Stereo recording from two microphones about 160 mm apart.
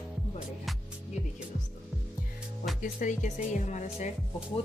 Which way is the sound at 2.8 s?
55° left (ahead or behind).